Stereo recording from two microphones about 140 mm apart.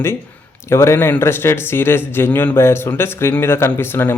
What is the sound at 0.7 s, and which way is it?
Speech, 20° left (ahead or behind).